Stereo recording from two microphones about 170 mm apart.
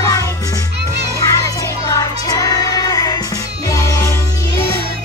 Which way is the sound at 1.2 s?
20° left (ahead or behind).